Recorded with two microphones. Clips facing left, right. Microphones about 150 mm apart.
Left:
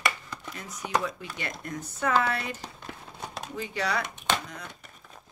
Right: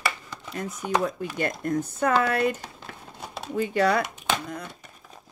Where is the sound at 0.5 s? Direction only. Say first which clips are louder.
Right 4 dB; 45° right (ahead or behind).